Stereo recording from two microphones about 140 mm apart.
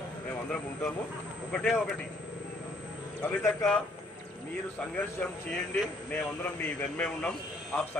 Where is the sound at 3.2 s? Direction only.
20° left (ahead or behind).